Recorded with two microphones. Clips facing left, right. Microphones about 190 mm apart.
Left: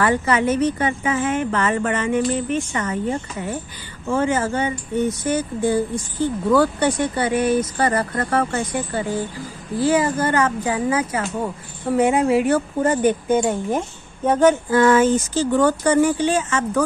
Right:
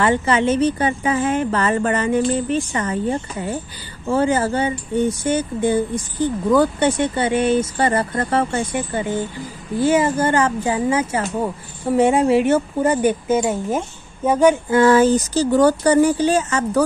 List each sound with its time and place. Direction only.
0.0 s speech: 25° right (ahead or behind)
12.8 s speech: 10° right (ahead or behind)
14.7 s speech: 30° right (ahead or behind)